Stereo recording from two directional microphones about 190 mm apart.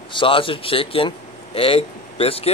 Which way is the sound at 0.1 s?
25° left (ahead or behind).